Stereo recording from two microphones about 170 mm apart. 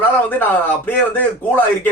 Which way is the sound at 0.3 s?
10° left (ahead or behind).